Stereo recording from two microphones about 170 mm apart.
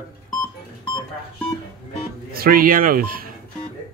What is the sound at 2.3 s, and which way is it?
Speech, 60° right (ahead or behind).